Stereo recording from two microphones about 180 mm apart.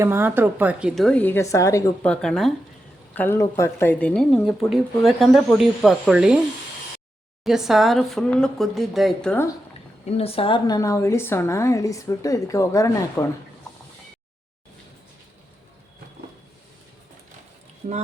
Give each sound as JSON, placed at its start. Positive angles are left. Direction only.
{"t": 0.0, "sound": "speech", "side_deg": -15}
{"t": 2.0, "sound": "a woman's voice", "side_deg": 5}
{"t": 7.4, "sound": "speech", "side_deg": 0}
{"t": 10.1, "sound": "a woman's voice", "side_deg": 35}